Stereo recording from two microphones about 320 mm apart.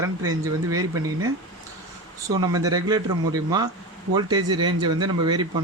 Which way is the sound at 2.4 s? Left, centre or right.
Centre.